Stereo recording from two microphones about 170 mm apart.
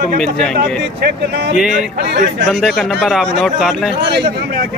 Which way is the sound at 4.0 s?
80° right.